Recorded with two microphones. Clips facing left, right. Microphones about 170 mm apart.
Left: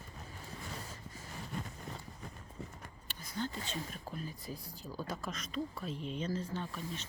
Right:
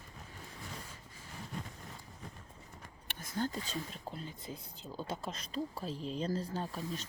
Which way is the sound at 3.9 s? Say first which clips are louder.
Left 1 dB; 25° right (ahead or behind).